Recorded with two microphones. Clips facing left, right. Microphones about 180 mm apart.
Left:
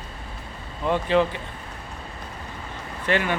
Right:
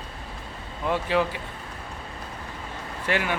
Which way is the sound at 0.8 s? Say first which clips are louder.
Left 3 dB; 10° right (ahead or behind).